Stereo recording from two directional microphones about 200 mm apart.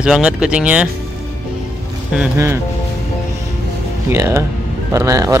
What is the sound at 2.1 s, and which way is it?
Speech, 15° right (ahead or behind).